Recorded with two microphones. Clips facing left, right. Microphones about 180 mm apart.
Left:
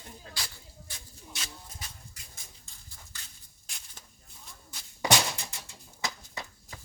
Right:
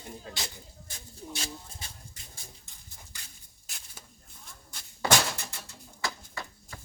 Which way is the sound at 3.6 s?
5° right (ahead or behind).